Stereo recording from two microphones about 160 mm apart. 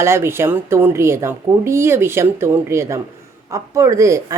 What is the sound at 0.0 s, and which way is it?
A woman's voice, 15° right (ahead or behind).